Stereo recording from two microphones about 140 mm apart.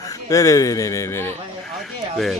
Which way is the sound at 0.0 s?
25° left (ahead or behind).